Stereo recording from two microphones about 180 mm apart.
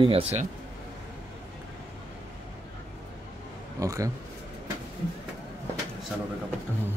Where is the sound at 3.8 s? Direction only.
20° right (ahead or behind).